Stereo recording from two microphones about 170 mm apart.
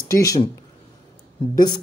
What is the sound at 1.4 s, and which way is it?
Speech, 30° left (ahead or behind).